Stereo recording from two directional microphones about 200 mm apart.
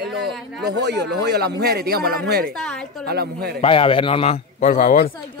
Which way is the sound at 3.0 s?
50° right (ahead or behind).